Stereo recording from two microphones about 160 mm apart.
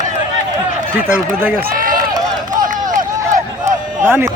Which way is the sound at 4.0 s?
15° right (ahead or behind).